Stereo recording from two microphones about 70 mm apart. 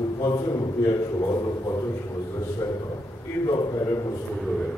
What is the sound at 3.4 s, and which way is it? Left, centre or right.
Speech, left.